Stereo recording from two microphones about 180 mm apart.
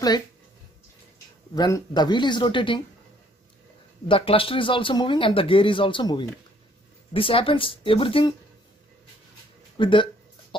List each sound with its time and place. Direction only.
1.5 s speech: 20° left (ahead or behind)
4.1 s speech: 30° left (ahead or behind)
9.8 s speech: 30° left (ahead or behind)